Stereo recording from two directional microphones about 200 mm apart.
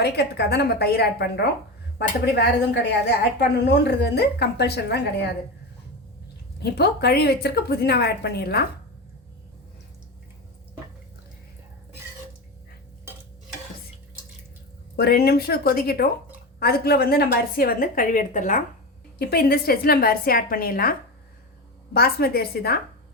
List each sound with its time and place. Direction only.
0.0 s a woman's voice: 55° left (ahead or behind)
6.6 s a woman's voice: 55° left (ahead or behind)
13.1 s stir: 10° right (ahead or behind)
14.9 s a woman's voice: 50° left (ahead or behind)
19.3 s a woman's voice: 50° left (ahead or behind)
21.9 s a woman's voice: 50° left (ahead or behind)